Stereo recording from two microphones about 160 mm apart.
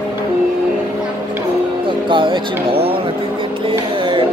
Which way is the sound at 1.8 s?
30° right (ahead or behind).